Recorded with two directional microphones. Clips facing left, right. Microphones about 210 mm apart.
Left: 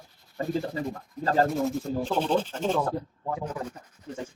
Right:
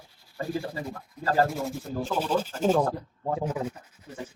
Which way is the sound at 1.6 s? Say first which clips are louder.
Left 4 dB; 5° right (ahead or behind).